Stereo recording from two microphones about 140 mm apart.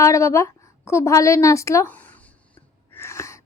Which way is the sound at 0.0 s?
20° left (ahead or behind).